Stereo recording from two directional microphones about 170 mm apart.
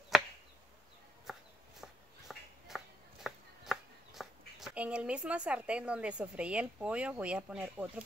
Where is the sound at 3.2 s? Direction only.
Centre (ahead or behind).